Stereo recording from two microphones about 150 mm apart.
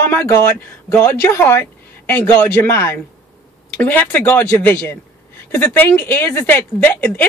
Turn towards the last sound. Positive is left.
turn(degrees=10)  # may be behind; listen again after turning